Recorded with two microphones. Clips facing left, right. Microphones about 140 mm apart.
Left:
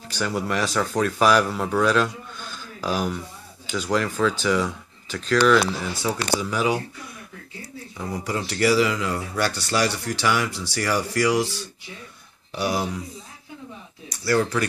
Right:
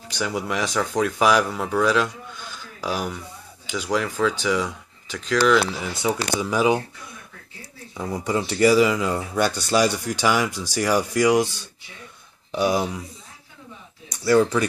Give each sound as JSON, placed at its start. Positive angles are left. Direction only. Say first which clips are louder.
{"t": 0.1, "sound": "speech", "louder": "left 1 dB", "side_deg": -5}
{"t": 1.8, "sound": "a sound", "louder": "even", "side_deg": -10}
{"t": 3.6, "sound": "speech", "louder": "left 1 dB", "side_deg": -10}
{"t": 6.2, "sound": "speech", "louder": "right 2 dB", "side_deg": -20}
{"t": 8.3, "sound": "speech", "louder": "right 4 dB", "side_deg": -20}
{"t": 12.5, "sound": "speech", "louder": "right 3 dB", "side_deg": -20}
{"t": 14.0, "sound": "speech", "louder": "right 4 dB", "side_deg": -20}